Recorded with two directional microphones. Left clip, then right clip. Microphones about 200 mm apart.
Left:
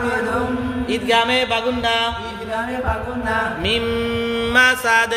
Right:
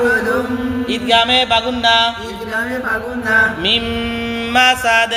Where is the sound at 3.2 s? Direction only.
15° left (ahead or behind).